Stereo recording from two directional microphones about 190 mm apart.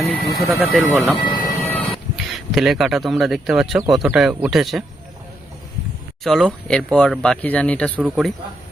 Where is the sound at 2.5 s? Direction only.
Centre (ahead or behind).